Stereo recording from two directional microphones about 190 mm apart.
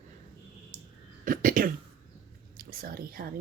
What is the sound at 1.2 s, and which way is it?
Speech, 45° right (ahead or behind).